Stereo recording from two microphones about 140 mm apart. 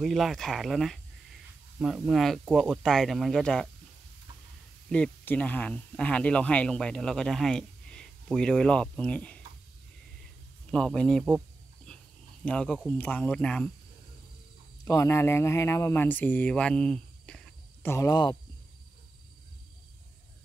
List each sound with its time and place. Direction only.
0.0 s speech: centre (ahead or behind)
4.8 s speech: 5° left (ahead or behind)
10.7 s speech: 5° left (ahead or behind)
12.4 s speech: 5° left (ahead or behind)
14.9 s speech: 20° left (ahead or behind)
17.8 s speech: 20° left (ahead or behind)